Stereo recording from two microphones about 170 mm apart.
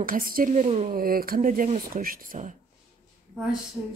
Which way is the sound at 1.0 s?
60° right (ahead or behind).